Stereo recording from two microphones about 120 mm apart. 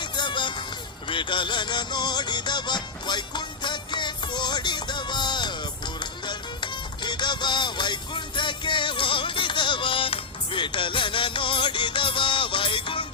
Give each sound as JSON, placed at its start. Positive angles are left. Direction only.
{"t": 0.0, "sound": "music", "side_deg": 40}